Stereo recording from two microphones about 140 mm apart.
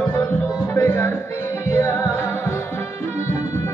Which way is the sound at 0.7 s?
15° left (ahead or behind).